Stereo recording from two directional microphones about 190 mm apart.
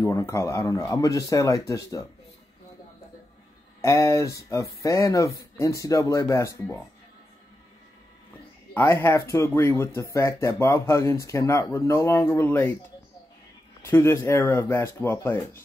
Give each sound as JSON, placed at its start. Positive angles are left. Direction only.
{"t": 0.0, "sound": "speech", "side_deg": 15}
{"t": 3.8, "sound": "speech", "side_deg": 15}
{"t": 8.7, "sound": "speech", "side_deg": 10}
{"t": 13.8, "sound": "speech", "side_deg": 10}